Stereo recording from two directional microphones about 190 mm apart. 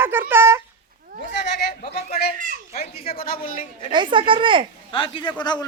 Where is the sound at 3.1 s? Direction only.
50° left (ahead or behind).